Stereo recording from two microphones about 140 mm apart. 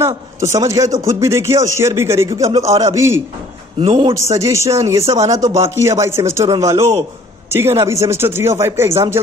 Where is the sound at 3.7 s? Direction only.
40° right (ahead or behind).